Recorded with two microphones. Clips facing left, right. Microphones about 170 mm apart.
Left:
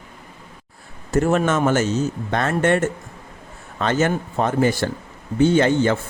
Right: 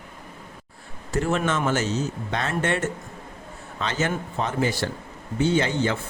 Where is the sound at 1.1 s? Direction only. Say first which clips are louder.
Left 6 dB; 45° left (ahead or behind).